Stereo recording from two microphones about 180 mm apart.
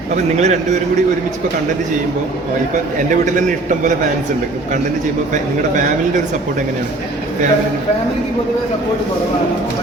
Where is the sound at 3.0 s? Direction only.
45° right (ahead or behind).